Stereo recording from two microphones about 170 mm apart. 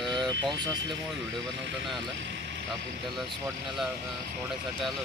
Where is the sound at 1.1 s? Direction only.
90° right.